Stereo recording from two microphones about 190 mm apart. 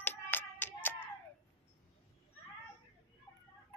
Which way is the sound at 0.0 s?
10° left (ahead or behind).